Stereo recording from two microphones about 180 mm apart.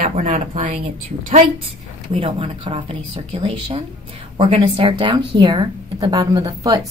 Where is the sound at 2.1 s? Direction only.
30° right (ahead or behind).